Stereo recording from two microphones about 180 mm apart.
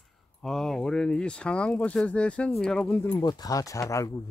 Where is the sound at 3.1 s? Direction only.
20° left (ahead or behind).